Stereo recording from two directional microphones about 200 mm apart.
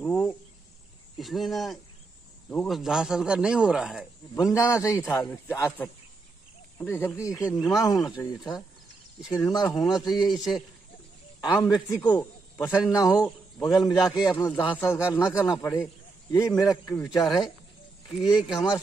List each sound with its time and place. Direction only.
0.0 s cricket: 5° left (ahead or behind)
1.1 s a man's voice: centre (ahead or behind)
4.4 s speech: 15° left (ahead or behind)
10.0 s a man's voice: centre (ahead or behind)
11.4 s a man's voice: 20° left (ahead or behind)
18.0 s a man's voice: centre (ahead or behind)